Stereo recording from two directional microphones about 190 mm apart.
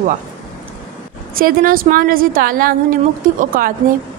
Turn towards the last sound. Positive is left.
turn(degrees=-45)  # may be behind; listen again after turning